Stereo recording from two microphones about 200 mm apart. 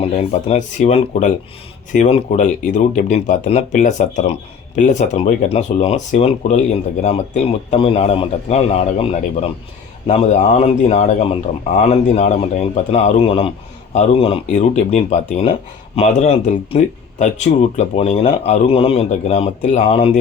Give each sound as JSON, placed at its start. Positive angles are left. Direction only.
{"t": 0.4, "sound": "speech", "side_deg": 35}